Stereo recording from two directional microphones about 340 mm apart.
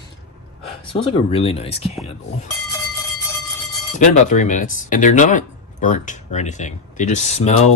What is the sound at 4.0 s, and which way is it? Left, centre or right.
Speech, left.